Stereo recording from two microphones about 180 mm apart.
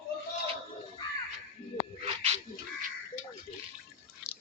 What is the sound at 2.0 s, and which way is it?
Dog, 35° right (ahead or behind).